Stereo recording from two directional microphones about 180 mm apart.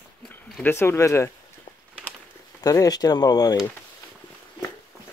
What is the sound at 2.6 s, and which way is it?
Speech, 20° left (ahead or behind).